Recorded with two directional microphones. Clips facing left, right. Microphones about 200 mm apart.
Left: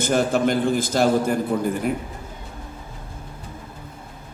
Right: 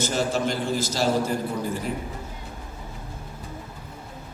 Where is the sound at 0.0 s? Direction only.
55° left (ahead or behind).